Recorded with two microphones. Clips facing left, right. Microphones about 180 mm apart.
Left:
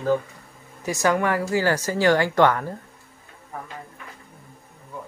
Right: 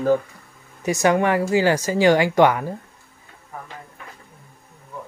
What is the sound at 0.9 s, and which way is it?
Speech, 20° right (ahead or behind).